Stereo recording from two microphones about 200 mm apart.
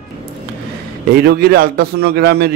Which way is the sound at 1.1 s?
45° right (ahead or behind).